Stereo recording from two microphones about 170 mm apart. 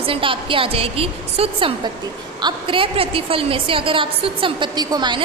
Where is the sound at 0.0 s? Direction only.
30° right (ahead or behind).